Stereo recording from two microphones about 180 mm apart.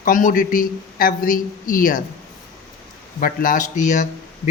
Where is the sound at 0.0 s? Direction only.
50° left (ahead or behind).